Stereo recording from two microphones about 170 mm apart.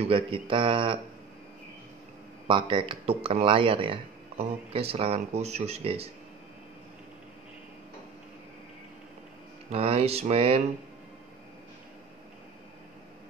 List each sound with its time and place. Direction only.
0.0 s speech: 30° right (ahead or behind)
2.4 s speech: 30° right (ahead or behind)
9.7 s speech: 35° right (ahead or behind)